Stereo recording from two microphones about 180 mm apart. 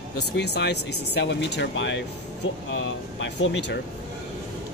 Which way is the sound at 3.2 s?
85° left.